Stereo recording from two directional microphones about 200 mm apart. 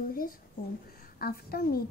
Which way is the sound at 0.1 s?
45° left (ahead or behind).